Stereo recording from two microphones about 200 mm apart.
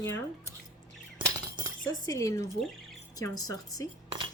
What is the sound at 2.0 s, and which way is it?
A woman's voice, 15° left (ahead or behind).